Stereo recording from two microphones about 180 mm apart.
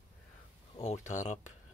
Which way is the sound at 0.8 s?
40° left (ahead or behind).